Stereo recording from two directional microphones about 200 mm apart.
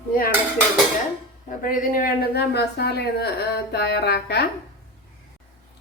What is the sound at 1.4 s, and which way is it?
A woman's voice, 40° left (ahead or behind).